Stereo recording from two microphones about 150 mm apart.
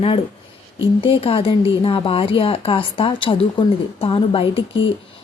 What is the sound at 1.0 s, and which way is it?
Speech, 40° left (ahead or behind).